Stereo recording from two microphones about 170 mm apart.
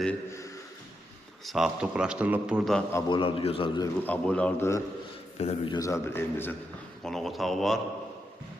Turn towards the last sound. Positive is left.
turn(degrees=0)  # may be behind; listen again after turning